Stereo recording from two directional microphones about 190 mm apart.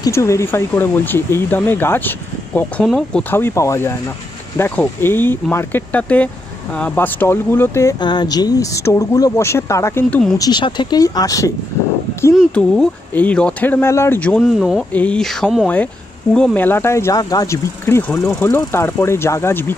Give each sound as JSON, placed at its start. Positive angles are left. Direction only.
{"t": 0.0, "sound": "speech", "side_deg": 15}
{"t": 10.4, "sound": "speech", "side_deg": 25}
{"t": 12.4, "sound": "speech", "side_deg": 5}